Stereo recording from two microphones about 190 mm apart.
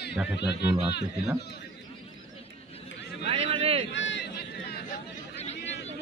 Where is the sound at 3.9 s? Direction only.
75° left (ahead or behind).